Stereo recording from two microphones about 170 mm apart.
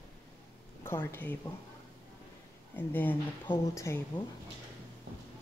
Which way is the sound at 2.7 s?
10° left (ahead or behind).